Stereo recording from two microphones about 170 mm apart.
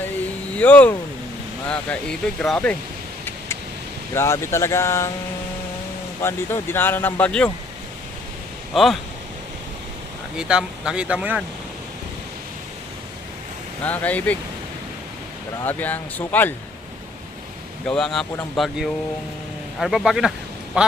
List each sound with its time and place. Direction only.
0.5 s speech: 10° left (ahead or behind)
4.1 s speech: 15° left (ahead or behind)
6.2 s speech: 15° left (ahead or behind)
8.7 s speech: centre (ahead or behind)
10.3 s speech: 5° right (ahead or behind)
13.8 s speech: 10° left (ahead or behind)
15.6 s speech: 10° left (ahead or behind)
17.8 s speech: 5° left (ahead or behind)